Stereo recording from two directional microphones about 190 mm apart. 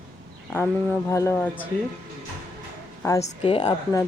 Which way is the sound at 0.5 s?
15° left (ahead or behind).